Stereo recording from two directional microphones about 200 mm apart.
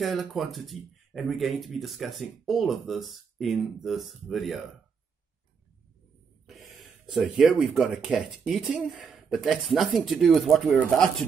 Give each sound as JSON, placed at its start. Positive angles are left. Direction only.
{"t": 0.0, "sound": "speech", "side_deg": 0}
{"t": 6.4, "sound": "speech", "side_deg": 0}